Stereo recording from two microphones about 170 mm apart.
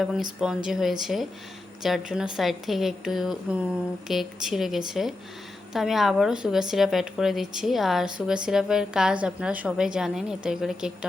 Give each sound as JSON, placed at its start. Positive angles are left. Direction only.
{"t": 0.0, "sound": "a woman's voice", "side_deg": -5}